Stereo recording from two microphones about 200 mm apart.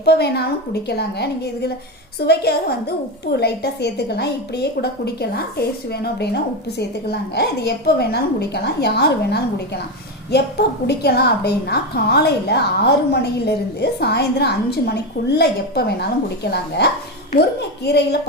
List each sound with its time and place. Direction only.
0.0 s a woman's voice: 55° left (ahead or behind)